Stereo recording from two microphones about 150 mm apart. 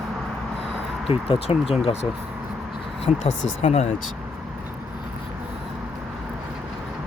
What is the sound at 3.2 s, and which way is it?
Speech, 45° left (ahead or behind).